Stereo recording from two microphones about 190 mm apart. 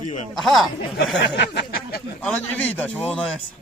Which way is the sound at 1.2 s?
60° left (ahead or behind).